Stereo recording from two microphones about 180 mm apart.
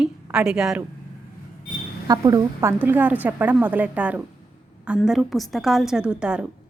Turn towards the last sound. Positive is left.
turn(degrees=-5)  # may be behind; listen again after turning